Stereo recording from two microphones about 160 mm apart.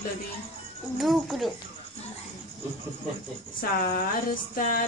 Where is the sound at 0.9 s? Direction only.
Centre (ahead or behind).